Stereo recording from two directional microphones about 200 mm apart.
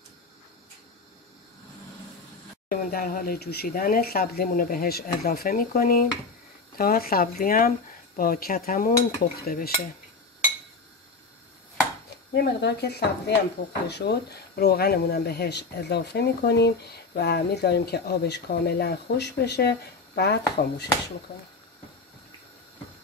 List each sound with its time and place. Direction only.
2.7 s speech: 45° left (ahead or behind)
12.4 s speech: 55° left (ahead or behind)